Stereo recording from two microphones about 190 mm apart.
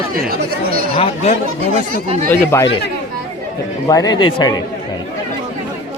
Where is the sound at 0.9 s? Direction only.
35° left (ahead or behind).